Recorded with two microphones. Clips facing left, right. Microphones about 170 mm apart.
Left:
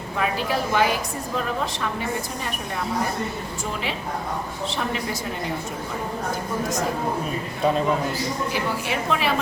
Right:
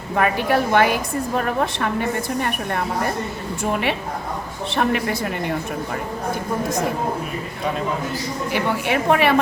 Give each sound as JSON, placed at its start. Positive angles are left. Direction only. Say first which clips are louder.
{"t": 0.2, "sound": "a woman's voice", "louder": "right 6 dB", "side_deg": -60}
{"t": 8.5, "sound": "a woman's voice", "louder": "right 5 dB", "side_deg": -60}